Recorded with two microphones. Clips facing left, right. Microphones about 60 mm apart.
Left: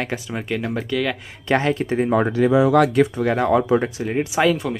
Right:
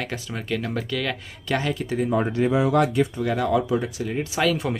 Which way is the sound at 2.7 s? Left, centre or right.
Left.